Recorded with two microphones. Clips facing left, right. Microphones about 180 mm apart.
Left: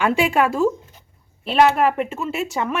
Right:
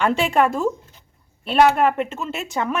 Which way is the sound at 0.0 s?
5° left (ahead or behind).